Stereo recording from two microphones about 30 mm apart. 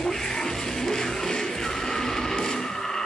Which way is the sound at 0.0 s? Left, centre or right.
Left.